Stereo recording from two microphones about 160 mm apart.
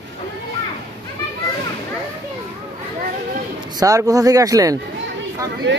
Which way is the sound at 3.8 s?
20° right (ahead or behind).